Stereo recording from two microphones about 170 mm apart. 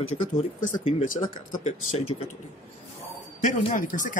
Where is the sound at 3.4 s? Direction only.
50° left (ahead or behind).